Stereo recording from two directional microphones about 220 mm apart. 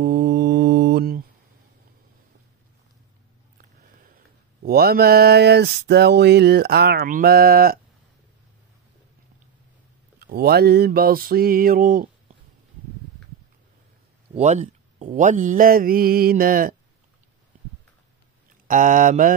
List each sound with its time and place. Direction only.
0.0 s mantra: 50° right (ahead or behind)
4.6 s a sound: 45° right (ahead or behind)
10.1 s mantra: 45° right (ahead or behind)
14.3 s speech: 30° right (ahead or behind)
18.7 s speech: 35° right (ahead or behind)